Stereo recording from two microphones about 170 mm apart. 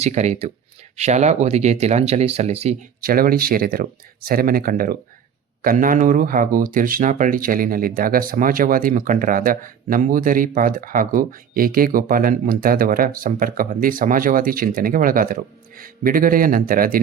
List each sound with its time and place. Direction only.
0.0 s speech: 40° right (ahead or behind)
3.0 s speech: 60° right (ahead or behind)